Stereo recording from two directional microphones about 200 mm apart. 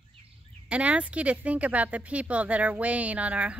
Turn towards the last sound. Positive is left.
turn(degrees=-5)  # may be behind; listen again after turning